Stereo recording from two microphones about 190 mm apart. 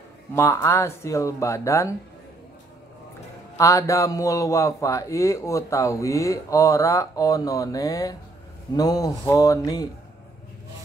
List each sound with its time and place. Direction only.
0.3 s a man's voice: 15° left (ahead or behind)
3.5 s a man's voice: 15° left (ahead or behind)